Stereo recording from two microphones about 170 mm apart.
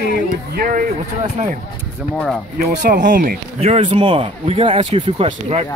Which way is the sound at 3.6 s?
35° right (ahead or behind).